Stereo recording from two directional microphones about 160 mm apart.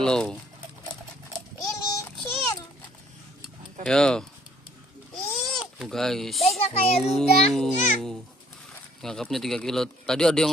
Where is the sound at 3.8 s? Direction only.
5° left (ahead or behind).